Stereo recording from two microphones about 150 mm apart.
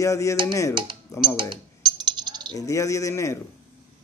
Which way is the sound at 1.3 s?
30° right (ahead or behind).